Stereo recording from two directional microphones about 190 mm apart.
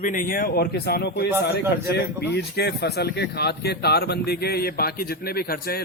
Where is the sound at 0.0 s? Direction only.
45° left (ahead or behind); by 1.5 s 65° left (ahead or behind).